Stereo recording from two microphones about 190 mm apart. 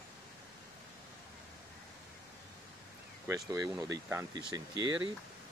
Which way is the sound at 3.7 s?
20° right (ahead or behind).